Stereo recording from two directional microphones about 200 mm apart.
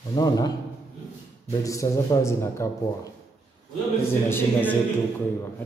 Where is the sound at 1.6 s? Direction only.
15° left (ahead or behind).